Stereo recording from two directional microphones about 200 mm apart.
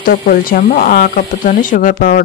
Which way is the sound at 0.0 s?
45° left (ahead or behind).